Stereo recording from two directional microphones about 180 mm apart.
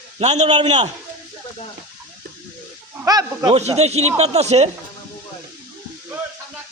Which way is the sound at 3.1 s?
20° right (ahead or behind).